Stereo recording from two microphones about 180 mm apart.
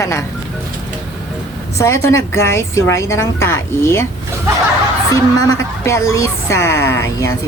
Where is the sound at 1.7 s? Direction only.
15° left (ahead or behind).